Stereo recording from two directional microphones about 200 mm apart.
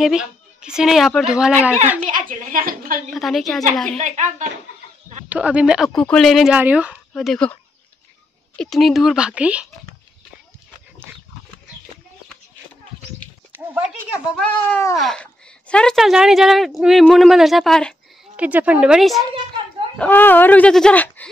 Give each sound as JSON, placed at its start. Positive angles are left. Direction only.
{"t": 0.0, "sound": "speech", "side_deg": -5}
{"t": 2.0, "sound": "a sound", "side_deg": -40}
{"t": 3.1, "sound": "speech", "side_deg": 0}
{"t": 4.0, "sound": "speech", "side_deg": -35}
{"t": 5.3, "sound": "speech", "side_deg": -5}
{"t": 8.5, "sound": "speech", "side_deg": 0}
{"t": 13.5, "sound": "a sound", "side_deg": -10}
{"t": 13.8, "sound": "speech", "side_deg": 0}
{"t": 20.0, "sound": "speech", "side_deg": 10}